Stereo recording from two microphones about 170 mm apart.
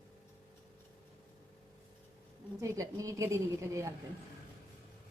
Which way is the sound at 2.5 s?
20° right (ahead or behind).